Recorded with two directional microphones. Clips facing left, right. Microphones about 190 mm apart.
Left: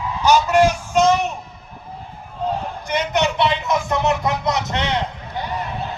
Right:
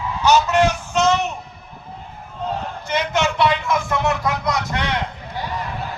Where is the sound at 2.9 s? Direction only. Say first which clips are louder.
Left 1 dB; 20° left (ahead or behind).